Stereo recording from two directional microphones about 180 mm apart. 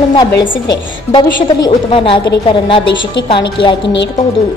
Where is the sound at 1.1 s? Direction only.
25° left (ahead or behind).